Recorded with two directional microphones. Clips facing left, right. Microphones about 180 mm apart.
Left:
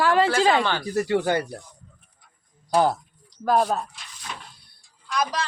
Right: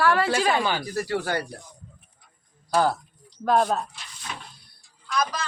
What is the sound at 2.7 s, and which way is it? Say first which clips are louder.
Speech: left 2 dB; 20° left (ahead or behind).